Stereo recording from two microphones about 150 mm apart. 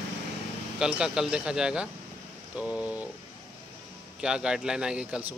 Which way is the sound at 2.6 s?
5° right (ahead or behind).